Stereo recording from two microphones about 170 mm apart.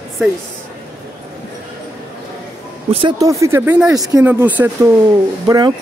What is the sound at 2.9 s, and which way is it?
Speech, 30° right (ahead or behind).